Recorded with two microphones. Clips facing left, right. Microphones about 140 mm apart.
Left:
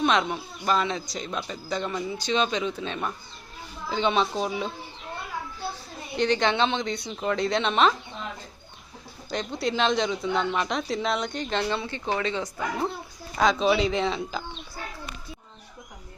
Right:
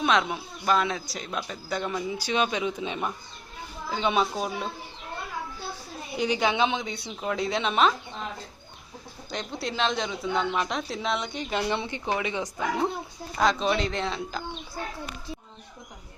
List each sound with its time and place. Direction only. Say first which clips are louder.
0.0 s speech: left 1 dB; centre (ahead or behind)
6.1 s speech: left 2 dB; 10° right (ahead or behind)
9.3 s speech: left 4 dB; centre (ahead or behind)
13.4 s speech: left 3 dB; centre (ahead or behind)